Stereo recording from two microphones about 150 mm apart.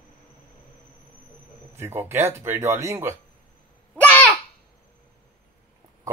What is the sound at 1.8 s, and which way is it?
A man's voice, 15° right (ahead or behind).